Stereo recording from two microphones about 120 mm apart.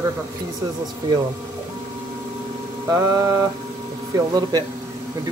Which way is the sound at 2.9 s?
30° right (ahead or behind).